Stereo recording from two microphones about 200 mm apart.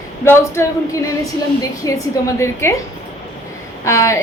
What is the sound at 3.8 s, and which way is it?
Speech, 15° left (ahead or behind).